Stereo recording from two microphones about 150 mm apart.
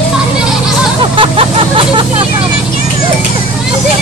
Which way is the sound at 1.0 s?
35° right (ahead or behind).